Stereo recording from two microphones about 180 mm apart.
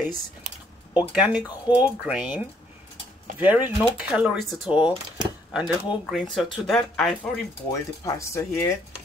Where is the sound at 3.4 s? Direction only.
10° right (ahead or behind).